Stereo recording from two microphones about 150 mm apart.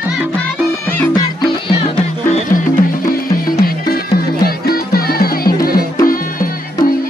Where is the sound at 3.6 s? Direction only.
90° left.